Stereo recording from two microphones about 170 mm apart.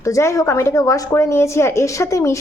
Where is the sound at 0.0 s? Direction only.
20° left (ahead or behind).